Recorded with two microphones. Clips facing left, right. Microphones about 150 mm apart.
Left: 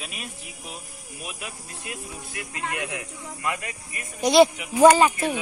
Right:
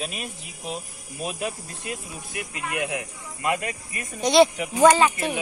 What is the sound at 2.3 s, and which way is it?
Speech, 20° right (ahead or behind).